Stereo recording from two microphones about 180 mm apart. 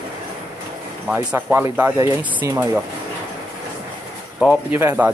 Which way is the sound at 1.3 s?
10° right (ahead or behind).